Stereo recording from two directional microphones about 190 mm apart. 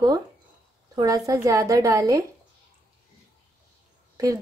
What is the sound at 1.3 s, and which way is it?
Speech, 15° right (ahead or behind).